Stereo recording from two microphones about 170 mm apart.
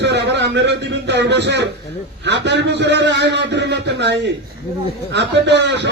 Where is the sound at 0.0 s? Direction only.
85° right.